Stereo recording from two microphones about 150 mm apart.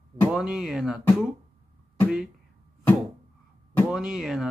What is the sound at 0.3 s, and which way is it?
Speech, 5° right (ahead or behind).